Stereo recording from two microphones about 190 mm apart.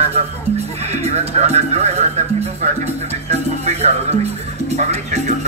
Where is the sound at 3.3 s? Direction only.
35° right (ahead or behind).